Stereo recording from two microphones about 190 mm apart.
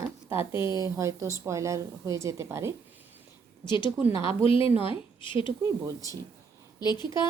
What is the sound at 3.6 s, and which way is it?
Speech, 25° left (ahead or behind).